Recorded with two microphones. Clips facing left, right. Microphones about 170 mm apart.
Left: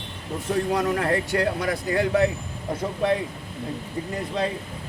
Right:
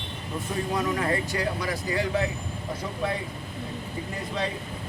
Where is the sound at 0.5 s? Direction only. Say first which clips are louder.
Left 5 dB; 70° left (ahead or behind).